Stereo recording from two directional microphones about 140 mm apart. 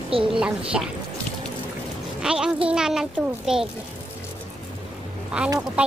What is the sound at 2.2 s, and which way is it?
Speech, 5° right (ahead or behind).